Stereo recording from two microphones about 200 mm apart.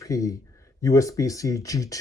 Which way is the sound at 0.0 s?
15° left (ahead or behind).